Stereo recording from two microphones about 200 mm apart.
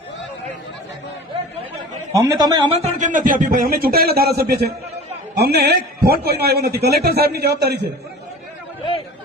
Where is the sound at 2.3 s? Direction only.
20° right (ahead or behind).